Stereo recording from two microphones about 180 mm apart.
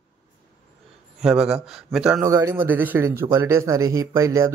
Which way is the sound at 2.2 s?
15° right (ahead or behind).